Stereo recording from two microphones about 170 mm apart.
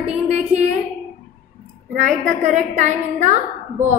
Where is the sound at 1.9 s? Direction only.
50° right (ahead or behind).